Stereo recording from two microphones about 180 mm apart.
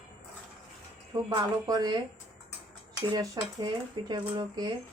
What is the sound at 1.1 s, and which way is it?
Speech, 20° right (ahead or behind).